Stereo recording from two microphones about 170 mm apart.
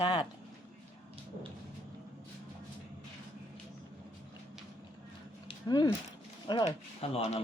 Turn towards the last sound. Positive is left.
turn(degrees=40)  # may be behind; listen again after turning